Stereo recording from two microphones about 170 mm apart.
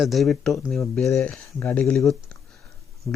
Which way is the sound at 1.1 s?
10° left (ahead or behind).